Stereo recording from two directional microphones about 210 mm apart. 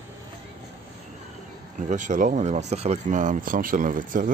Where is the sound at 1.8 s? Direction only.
35° right (ahead or behind).